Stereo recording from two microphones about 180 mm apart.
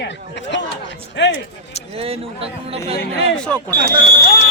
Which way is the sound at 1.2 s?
80° left.